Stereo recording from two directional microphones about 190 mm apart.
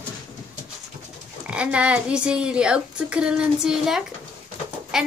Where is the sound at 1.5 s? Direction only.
5° right (ahead or behind).